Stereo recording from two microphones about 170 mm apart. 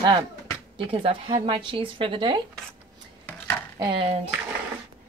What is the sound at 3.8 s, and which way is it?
Speech, 30° right (ahead or behind).